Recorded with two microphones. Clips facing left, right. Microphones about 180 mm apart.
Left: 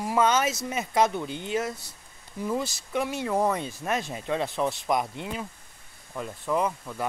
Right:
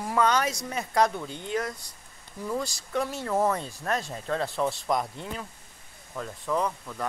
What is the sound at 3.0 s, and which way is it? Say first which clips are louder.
Speech: left 2 dB; 15° left (ahead or behind).